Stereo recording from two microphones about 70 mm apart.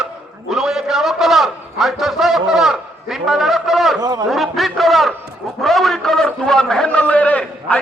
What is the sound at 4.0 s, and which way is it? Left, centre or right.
Speech, right.